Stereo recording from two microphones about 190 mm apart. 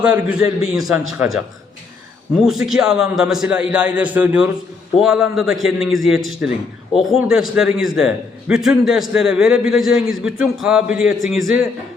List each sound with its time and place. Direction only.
0.0 s a man's voice: 5° right (ahead or behind)
2.3 s a man's voice: 5° right (ahead or behind)